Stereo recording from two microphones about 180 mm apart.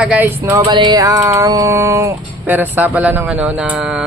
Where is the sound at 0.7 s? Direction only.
25° right (ahead or behind).